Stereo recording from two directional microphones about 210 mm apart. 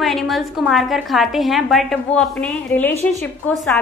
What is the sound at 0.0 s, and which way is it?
A woman's voice, centre (ahead or behind).